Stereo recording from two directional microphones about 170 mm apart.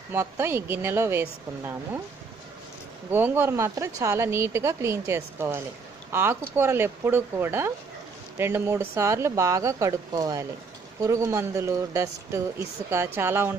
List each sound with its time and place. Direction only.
0.1 s speech: 15° right (ahead or behind)
3.1 s speech: 10° right (ahead or behind)